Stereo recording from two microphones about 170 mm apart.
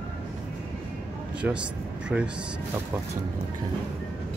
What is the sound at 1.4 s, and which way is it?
Speech, 10° right (ahead or behind).